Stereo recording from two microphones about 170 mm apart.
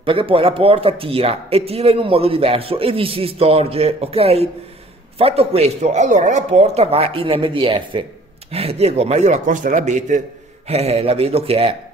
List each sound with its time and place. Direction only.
0.0 s speech: 30° right (ahead or behind)